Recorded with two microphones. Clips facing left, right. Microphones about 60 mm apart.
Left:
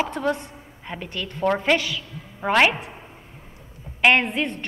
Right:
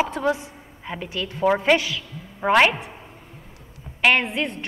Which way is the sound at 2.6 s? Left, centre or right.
Centre.